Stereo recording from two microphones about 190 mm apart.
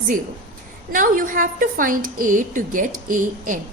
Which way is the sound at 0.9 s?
45° right (ahead or behind).